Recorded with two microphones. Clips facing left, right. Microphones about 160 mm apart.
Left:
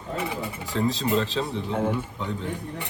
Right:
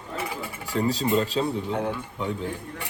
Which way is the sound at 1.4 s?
5° left (ahead or behind).